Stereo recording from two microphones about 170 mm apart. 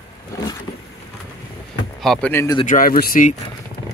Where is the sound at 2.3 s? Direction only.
15° left (ahead or behind).